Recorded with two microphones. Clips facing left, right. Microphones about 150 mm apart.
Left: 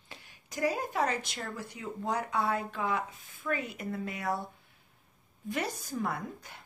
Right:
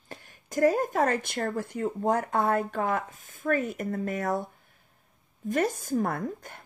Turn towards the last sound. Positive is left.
turn(degrees=-50)  # may be behind; listen again after turning